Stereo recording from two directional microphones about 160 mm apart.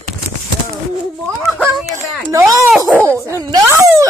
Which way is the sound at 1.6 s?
Centre (ahead or behind).